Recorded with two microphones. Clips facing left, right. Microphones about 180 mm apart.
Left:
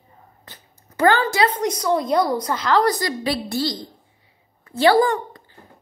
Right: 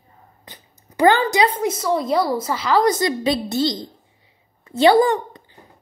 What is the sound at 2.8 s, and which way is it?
A woman's voice, 20° right (ahead or behind).